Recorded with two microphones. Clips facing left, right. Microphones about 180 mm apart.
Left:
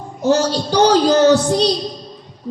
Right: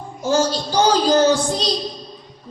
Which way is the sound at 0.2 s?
65° left (ahead or behind).